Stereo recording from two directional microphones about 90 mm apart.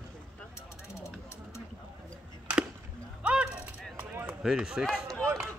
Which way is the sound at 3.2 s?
15° right (ahead or behind).